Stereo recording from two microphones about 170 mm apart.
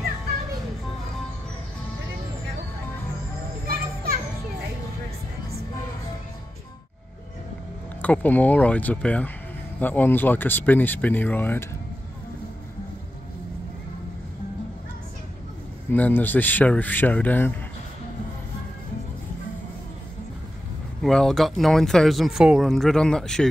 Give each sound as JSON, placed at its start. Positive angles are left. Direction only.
{"t": 3.6, "sound": "children playing", "side_deg": -60}
{"t": 8.0, "sound": "speech", "side_deg": 10}
{"t": 15.9, "sound": "speech", "side_deg": 10}
{"t": 21.0, "sound": "speech", "side_deg": 5}